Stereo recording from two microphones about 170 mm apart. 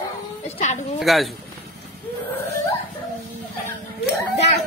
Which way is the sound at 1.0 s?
Centre (ahead or behind).